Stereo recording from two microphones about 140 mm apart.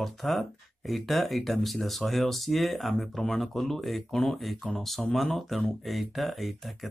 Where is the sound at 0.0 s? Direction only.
Centre (ahead or behind).